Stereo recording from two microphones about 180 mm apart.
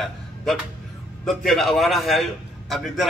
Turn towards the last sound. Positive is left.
turn(degrees=0)  # may be behind; listen again after turning